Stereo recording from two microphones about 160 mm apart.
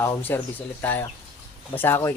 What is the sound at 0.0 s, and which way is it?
Speech, 10° left (ahead or behind).